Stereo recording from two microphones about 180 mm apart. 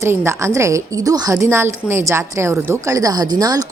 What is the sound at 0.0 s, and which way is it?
A woman's voice, 15° right (ahead or behind).